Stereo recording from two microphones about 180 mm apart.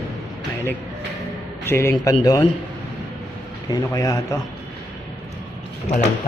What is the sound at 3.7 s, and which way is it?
Speech, 20° left (ahead or behind).